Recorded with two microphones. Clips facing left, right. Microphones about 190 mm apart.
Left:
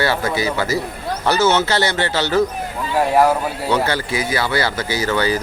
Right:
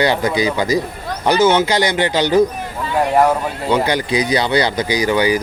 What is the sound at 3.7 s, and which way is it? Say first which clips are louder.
Speech: right 3 dB; 15° right (ahead or behind).